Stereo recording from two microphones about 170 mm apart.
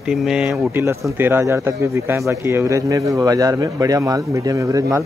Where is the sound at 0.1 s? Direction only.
5° right (ahead or behind).